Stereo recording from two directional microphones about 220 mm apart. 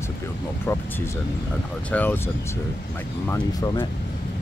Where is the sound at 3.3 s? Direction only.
15° left (ahead or behind).